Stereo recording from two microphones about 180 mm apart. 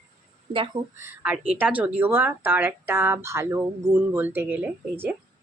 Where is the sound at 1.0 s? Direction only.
10° right (ahead or behind).